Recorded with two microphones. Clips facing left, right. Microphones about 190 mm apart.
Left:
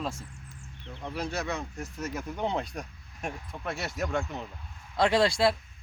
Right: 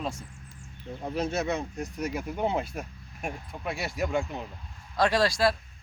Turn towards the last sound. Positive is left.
turn(degrees=25)  # may be behind; listen again after turning